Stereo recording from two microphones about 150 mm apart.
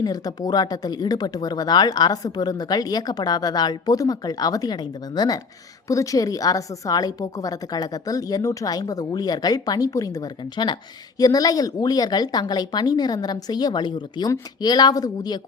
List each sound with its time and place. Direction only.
0.0 s speech: 25° left (ahead or behind)